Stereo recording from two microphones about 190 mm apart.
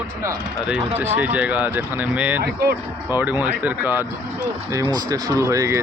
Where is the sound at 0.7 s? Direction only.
10° right (ahead or behind).